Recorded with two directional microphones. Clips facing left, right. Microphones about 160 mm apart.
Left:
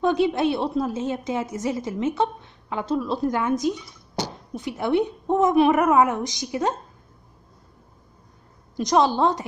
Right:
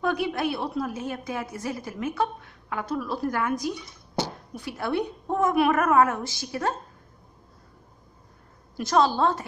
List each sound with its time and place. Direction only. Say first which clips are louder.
0.0 s a woman's voice: left 6 dB; 25° left (ahead or behind)
8.7 s a woman's voice: left 2 dB; 20° left (ahead or behind)